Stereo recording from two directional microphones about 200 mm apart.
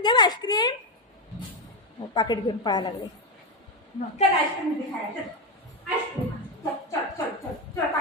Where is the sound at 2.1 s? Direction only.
20° left (ahead or behind).